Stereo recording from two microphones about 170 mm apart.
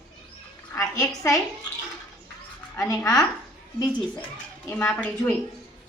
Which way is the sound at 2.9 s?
20° left (ahead or behind).